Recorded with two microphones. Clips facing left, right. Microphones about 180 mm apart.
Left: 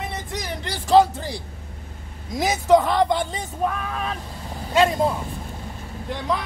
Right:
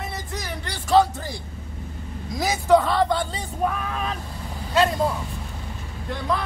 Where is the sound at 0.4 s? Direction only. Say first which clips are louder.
Left 3 dB; 20° left (ahead or behind).